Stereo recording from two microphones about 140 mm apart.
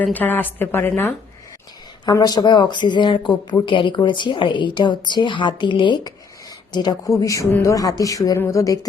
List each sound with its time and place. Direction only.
0.0 s a woman's voice: 10° left (ahead or behind)
2.0 s a woman's voice: 30° left (ahead or behind)